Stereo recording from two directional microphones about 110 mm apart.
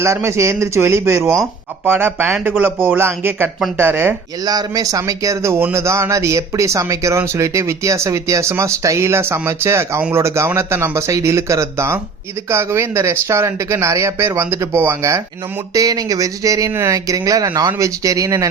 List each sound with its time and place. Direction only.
0.0 s speech: 25° right (ahead or behind)
1.2 s speech: centre (ahead or behind)
1.9 s speech: 20° right (ahead or behind)
4.4 s speech: 35° right (ahead or behind)